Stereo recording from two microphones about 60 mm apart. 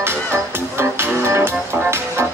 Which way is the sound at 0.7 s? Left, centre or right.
Right.